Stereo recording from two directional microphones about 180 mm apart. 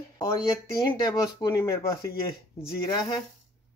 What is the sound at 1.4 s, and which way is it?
Speech, 20° left (ahead or behind).